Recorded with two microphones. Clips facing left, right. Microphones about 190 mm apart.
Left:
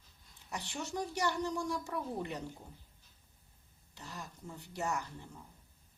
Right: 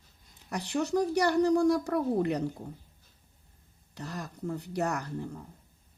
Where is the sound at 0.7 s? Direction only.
65° right (ahead or behind).